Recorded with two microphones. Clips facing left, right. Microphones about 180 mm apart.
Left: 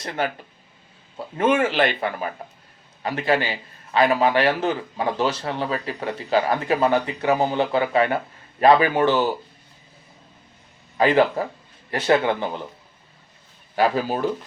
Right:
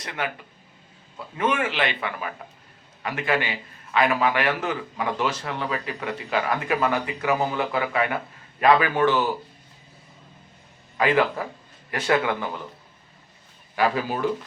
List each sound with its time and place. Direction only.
0.0 s a man's voice: 35° left (ahead or behind)
1.8 s a man's voice: 40° left (ahead or behind)
10.9 s a man's voice: 30° left (ahead or behind)
13.7 s a man's voice: 35° left (ahead or behind)